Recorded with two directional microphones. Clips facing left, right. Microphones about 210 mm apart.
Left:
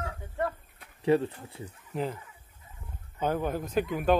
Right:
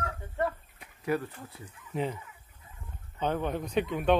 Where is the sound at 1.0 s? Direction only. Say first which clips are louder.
Left 6 dB; 25° left (ahead or behind).